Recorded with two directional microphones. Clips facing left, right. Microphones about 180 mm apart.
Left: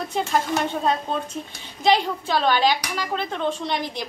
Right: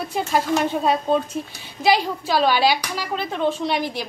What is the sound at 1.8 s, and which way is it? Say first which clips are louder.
Speech: right 1 dB; 5° right (ahead or behind).